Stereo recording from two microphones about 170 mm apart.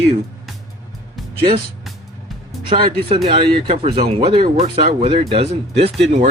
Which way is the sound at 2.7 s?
30° right (ahead or behind).